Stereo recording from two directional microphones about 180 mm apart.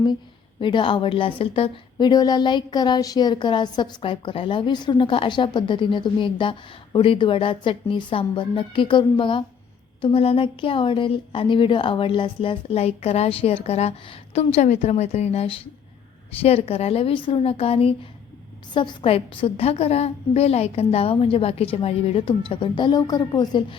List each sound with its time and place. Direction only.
0.6 s a woman's voice: 25° left (ahead or behind)